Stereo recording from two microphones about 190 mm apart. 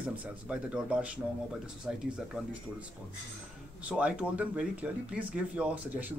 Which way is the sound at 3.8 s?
5° right (ahead or behind).